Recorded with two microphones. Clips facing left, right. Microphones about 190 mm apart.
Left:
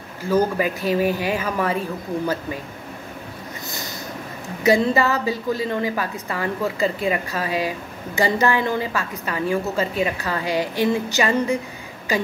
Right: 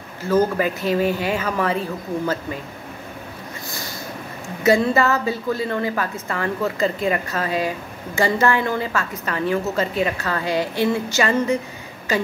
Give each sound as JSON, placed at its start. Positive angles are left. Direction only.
{"t": 0.3, "sound": "a woman's voice", "side_deg": 15}
{"t": 4.6, "sound": "a woman's voice", "side_deg": 15}